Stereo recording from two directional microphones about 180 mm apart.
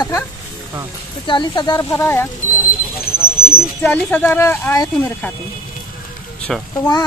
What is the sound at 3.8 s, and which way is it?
Speech, 10° left (ahead or behind).